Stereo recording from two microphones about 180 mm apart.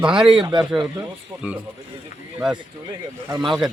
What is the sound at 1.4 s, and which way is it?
Speech, 5° right (ahead or behind).